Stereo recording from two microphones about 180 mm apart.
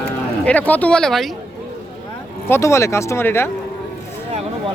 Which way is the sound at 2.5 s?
15° left (ahead or behind).